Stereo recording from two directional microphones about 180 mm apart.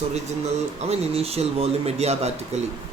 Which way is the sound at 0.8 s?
35° right (ahead or behind).